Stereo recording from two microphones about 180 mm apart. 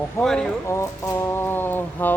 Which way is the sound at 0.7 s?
15° left (ahead or behind).